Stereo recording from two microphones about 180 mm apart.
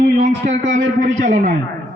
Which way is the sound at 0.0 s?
45° right (ahead or behind).